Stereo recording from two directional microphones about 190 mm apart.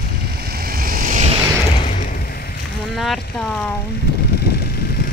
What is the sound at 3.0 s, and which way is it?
Boat, centre (ahead or behind).